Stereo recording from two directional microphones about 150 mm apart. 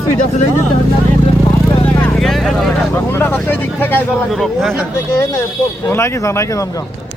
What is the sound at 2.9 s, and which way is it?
Speech, 15° left (ahead or behind).